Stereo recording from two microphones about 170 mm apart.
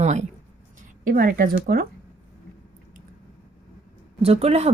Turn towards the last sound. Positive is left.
turn(degrees=-40)  # may be behind; listen again after turning